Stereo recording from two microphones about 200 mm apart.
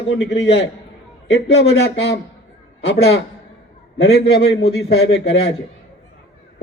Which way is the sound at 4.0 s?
80° left.